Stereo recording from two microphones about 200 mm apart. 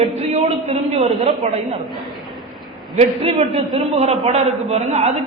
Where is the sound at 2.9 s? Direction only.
30° right (ahead or behind).